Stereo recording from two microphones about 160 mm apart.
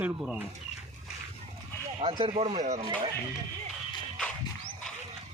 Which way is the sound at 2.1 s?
35° right (ahead or behind).